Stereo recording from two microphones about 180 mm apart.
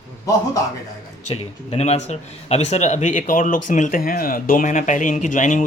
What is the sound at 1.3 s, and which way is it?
Speech, 35° left (ahead or behind).